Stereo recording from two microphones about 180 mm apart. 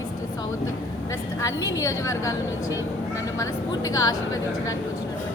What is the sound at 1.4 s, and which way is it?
Speech, 20° left (ahead or behind).